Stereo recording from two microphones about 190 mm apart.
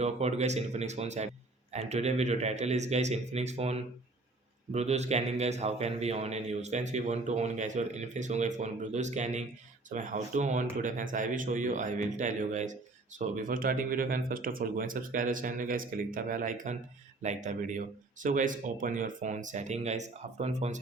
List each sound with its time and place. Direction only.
0.0 s a man's voice: 35° right (ahead or behind)